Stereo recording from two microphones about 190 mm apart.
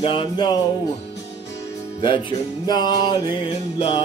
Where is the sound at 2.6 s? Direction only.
20° left (ahead or behind).